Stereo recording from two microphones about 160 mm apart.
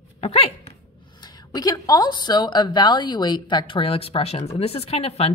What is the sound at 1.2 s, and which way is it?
A woman's voice, 25° left (ahead or behind).